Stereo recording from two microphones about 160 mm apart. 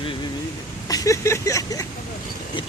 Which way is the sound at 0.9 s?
20° left (ahead or behind).